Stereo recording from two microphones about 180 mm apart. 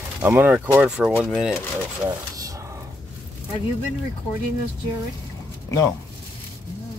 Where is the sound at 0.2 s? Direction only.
10° right (ahead or behind).